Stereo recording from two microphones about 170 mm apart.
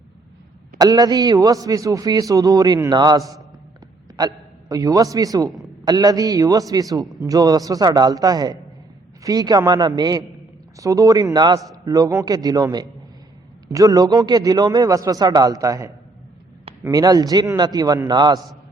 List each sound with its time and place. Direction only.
0.8 s a man's voice: 20° right (ahead or behind)